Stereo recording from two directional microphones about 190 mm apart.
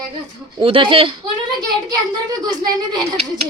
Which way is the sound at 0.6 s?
25° right (ahead or behind).